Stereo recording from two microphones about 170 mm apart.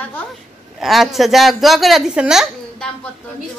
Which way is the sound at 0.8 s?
Centre (ahead or behind).